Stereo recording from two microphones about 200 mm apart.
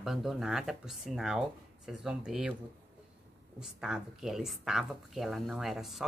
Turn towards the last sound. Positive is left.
turn(degrees=0)  # may be behind; listen again after turning